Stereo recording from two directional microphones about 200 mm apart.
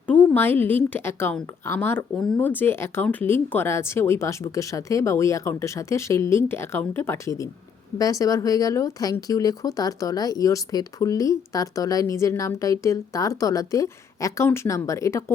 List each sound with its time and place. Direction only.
0.1 s a woman's voice: 10° left (ahead or behind)